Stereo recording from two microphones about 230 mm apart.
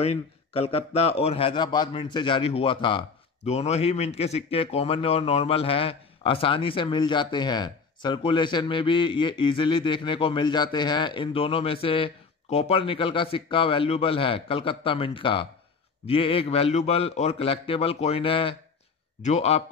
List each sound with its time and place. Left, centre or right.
0.0 s a man's voice: left